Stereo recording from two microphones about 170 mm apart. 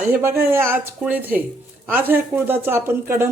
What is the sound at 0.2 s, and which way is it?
Speech, 15° right (ahead or behind).